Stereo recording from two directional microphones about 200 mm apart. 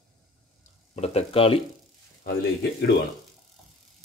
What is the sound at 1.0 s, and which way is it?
Speech, 30° left (ahead or behind).